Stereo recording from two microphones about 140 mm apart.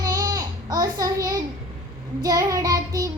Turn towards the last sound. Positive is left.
turn(degrees=-25)  # may be behind; listen again after turning